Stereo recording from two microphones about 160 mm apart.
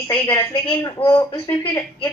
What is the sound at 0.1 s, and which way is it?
A woman's voice, 25° left (ahead or behind).